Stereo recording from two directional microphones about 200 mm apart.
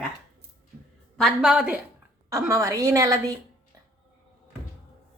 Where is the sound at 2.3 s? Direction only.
15° right (ahead or behind).